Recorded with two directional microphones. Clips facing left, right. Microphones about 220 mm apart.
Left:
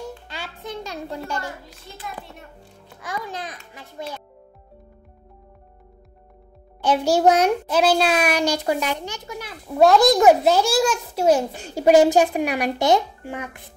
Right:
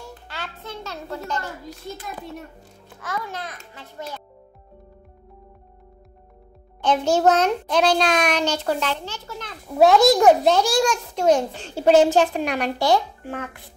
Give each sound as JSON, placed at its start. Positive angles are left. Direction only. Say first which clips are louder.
{"t": 0.3, "sound": "a child's voice", "louder": "left 2 dB", "side_deg": 15}
{"t": 1.7, "sound": "a child's voice", "louder": "right 4 dB", "side_deg": -40}
{"t": 3.0, "sound": "a child's voice", "louder": "even", "side_deg": 15}
{"t": 6.8, "sound": "a child's voice", "louder": "left 1 dB", "side_deg": 10}
{"t": 9.8, "sound": "a child's voice", "louder": "even", "side_deg": 0}